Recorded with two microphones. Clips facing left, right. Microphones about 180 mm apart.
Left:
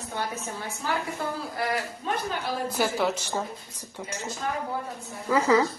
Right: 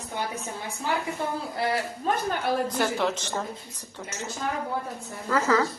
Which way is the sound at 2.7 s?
5° left (ahead or behind).